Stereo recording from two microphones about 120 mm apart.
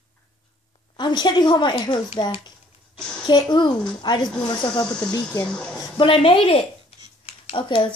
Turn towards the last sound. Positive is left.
turn(degrees=45)  # may be behind; listen again after turning